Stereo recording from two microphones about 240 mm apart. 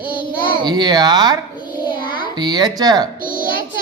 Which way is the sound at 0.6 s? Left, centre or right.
Centre.